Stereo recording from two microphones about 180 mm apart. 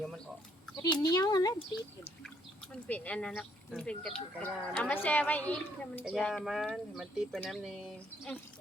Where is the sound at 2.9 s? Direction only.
5° left (ahead or behind).